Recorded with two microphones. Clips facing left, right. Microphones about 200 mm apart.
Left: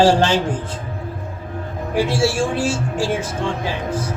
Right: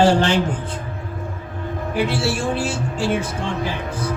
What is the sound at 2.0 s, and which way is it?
Speech, 60° right (ahead or behind).